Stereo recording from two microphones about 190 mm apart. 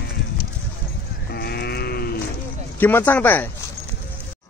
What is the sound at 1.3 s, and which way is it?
Livestock, 55° left (ahead or behind).